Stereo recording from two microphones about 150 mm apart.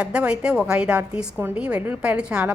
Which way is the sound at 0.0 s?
5° right (ahead or behind).